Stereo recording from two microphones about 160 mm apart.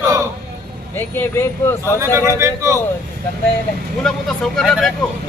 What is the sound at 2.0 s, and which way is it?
Speech, 20° right (ahead or behind).